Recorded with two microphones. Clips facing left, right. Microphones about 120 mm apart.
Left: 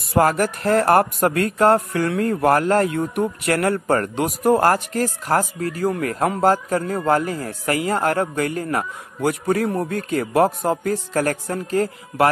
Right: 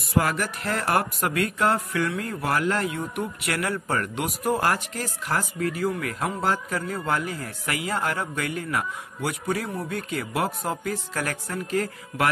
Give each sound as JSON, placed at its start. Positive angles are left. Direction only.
{"t": 0.1, "sound": "a man's voice", "side_deg": 50}